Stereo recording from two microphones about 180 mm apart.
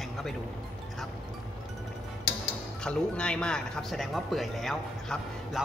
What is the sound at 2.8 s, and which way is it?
Speech, 5° left (ahead or behind).